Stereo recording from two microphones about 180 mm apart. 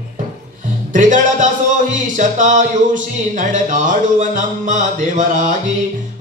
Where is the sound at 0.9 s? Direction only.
45° right (ahead or behind).